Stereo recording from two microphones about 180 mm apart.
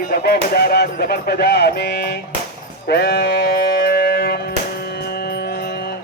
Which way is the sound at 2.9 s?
65° left (ahead or behind).